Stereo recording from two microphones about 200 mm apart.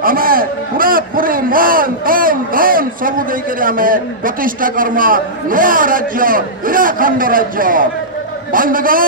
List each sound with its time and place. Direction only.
0.0 s a man's voice: 45° right (ahead or behind)